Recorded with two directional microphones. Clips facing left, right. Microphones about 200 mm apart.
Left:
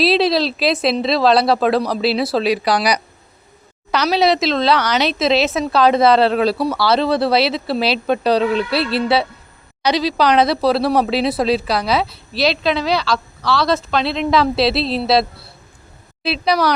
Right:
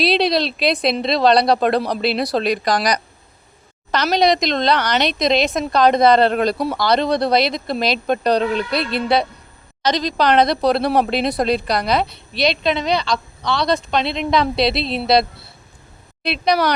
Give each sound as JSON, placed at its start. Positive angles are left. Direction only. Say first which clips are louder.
{"t": 0.0, "sound": "speech", "louder": "left 2 dB", "side_deg": 0}
{"t": 8.8, "sound": "speech", "louder": "left 3 dB", "side_deg": 30}
{"t": 9.8, "sound": "speech", "louder": "left 2 dB", "side_deg": 10}